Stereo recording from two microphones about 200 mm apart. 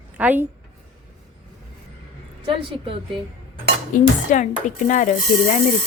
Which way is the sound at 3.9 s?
40° left (ahead or behind).